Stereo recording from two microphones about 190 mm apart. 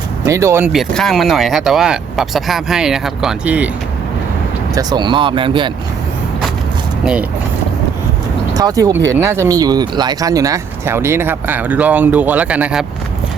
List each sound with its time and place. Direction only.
0.3 s speech: 15° right (ahead or behind)
0.7 s speech: centre (ahead or behind)
4.7 s speech: 20° right (ahead or behind)
7.0 s speech: 5° right (ahead or behind)
8.5 s speech: 20° right (ahead or behind)